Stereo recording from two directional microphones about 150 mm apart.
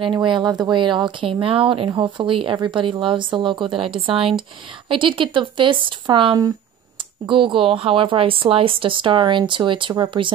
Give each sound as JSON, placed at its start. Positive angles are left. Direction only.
{"t": 0.0, "sound": "speech", "side_deg": -30}